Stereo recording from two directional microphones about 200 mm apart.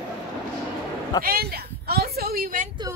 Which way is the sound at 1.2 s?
50° right (ahead or behind).